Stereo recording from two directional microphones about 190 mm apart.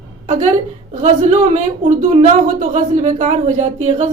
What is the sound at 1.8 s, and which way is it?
A woman's voice, 30° right (ahead or behind).